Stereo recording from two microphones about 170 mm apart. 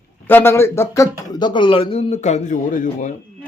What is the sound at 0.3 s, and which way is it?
Speech, 15° left (ahead or behind).